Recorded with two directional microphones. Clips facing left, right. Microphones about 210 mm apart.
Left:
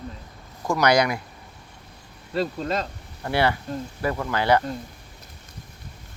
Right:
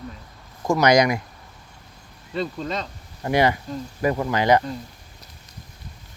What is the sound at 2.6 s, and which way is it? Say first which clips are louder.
Speech: left 2 dB; 45° left (ahead or behind).